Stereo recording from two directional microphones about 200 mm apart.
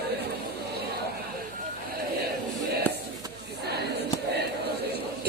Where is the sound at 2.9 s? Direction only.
10° left (ahead or behind).